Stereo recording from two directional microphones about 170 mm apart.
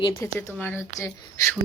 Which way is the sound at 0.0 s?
15° left (ahead or behind).